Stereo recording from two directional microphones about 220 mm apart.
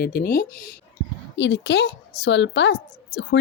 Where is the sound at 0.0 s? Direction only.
45° left (ahead or behind).